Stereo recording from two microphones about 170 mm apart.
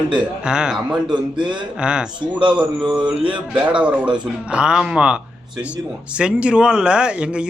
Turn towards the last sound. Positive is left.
turn(degrees=-5)  # may be behind; listen again after turning